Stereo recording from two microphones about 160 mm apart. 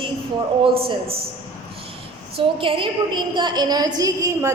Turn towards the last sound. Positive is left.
turn(degrees=-20)  # may be behind; listen again after turning